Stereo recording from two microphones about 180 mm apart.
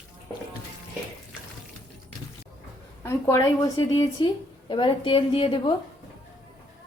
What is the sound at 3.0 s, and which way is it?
A woman's voice, 15° left (ahead or behind).